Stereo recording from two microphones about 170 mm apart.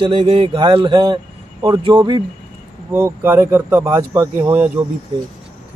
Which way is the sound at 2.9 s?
15° right (ahead or behind).